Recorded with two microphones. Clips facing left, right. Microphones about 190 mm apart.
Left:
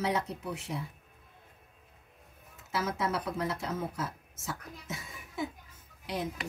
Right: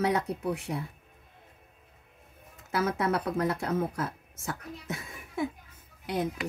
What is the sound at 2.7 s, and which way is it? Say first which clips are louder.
Speech: right 4 dB; 60° right (ahead or behind).